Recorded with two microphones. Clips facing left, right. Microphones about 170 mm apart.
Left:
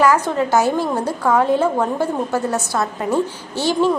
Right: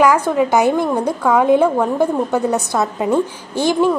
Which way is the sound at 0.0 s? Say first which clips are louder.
Right 2 dB; 10° right (ahead or behind).